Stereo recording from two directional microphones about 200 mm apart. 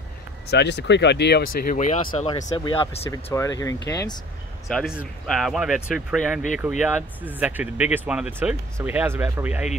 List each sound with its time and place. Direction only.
0.5 s speech: 60° left (ahead or behind); by 2.2 s 35° left (ahead or behind)
2.5 s speech: 25° left (ahead or behind)
4.6 s speech: centre (ahead or behind)